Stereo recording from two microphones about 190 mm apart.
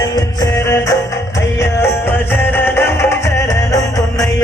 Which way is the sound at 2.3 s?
10° left (ahead or behind).